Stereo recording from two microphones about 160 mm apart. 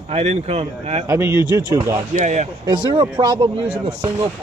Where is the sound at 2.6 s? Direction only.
30° right (ahead or behind).